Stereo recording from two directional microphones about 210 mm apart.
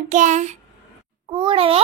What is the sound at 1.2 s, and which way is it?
Speech, 20° right (ahead or behind).